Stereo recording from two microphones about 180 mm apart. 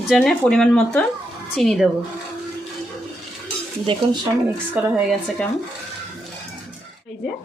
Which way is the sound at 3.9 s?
25° right (ahead or behind).